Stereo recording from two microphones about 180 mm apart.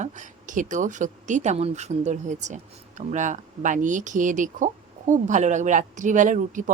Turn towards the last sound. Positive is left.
turn(degrees=-45)  # may be behind; listen again after turning